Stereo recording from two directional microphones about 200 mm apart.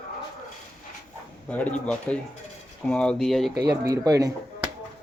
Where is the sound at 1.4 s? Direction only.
5° left (ahead or behind).